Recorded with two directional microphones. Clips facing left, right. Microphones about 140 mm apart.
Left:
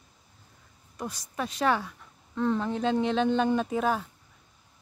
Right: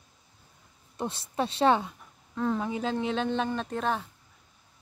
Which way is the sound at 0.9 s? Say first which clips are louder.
Right 4 dB; 25° right (ahead or behind).